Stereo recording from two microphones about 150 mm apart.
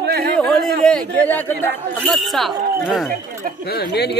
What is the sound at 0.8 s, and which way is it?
A man's voice, 5° left (ahead or behind).